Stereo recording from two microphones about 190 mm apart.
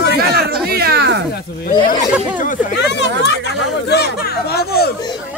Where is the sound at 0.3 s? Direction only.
55° right (ahead or behind).